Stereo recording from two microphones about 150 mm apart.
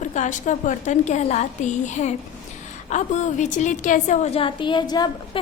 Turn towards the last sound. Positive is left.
turn(degrees=30)  # may be behind; listen again after turning